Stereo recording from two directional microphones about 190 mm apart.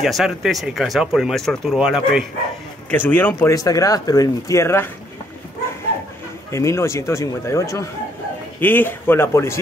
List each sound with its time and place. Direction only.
0.0 s speech: centre (ahead or behind)
2.9 s speech: 10° left (ahead or behind)
6.5 s speech: 15° left (ahead or behind)